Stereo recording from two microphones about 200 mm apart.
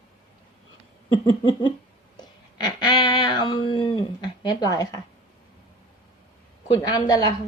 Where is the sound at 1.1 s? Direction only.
25° left (ahead or behind).